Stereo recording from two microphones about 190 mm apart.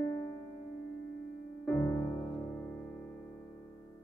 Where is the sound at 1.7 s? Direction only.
15° left (ahead or behind).